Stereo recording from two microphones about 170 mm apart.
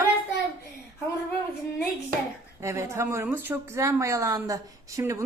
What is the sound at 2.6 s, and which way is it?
A woman's voice, 15° right (ahead or behind).